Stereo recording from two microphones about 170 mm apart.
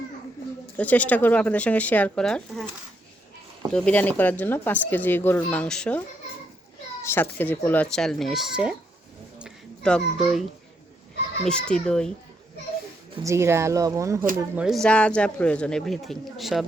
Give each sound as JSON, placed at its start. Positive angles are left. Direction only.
{"t": 0.8, "sound": "speech", "side_deg": 10}
{"t": 3.7, "sound": "speech", "side_deg": 5}
{"t": 7.0, "sound": "speech", "side_deg": 15}
{"t": 9.8, "sound": "speech", "side_deg": 0}
{"t": 11.7, "sound": "speech", "side_deg": 5}
{"t": 13.2, "sound": "speech", "side_deg": -15}
{"t": 14.3, "sound": "speech", "side_deg": -5}